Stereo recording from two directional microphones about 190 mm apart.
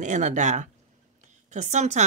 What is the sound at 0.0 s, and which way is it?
Speech, 40° right (ahead or behind).